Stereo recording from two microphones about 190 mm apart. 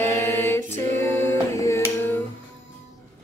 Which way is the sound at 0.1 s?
15° left (ahead or behind).